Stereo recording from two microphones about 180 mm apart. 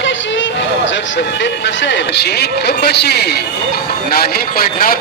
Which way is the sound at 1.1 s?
85° left.